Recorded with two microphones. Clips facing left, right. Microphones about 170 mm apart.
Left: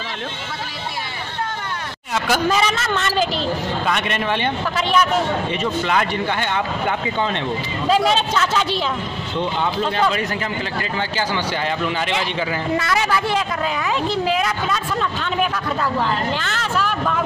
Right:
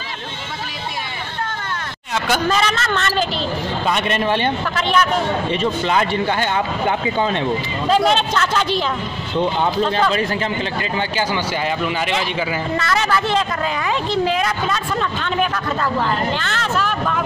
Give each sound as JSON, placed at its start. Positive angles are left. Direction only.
{"t": 2.1, "sound": "a woman's voice", "side_deg": 5}
{"t": 3.8, "sound": "speech", "side_deg": -35}
{"t": 4.7, "sound": "a woman's voice", "side_deg": 5}
{"t": 5.5, "sound": "speech", "side_deg": -30}
{"t": 8.1, "sound": "a woman's voice", "side_deg": 5}
{"t": 10.8, "sound": "speech", "side_deg": -15}
{"t": 12.7, "sound": "a woman's voice", "side_deg": 15}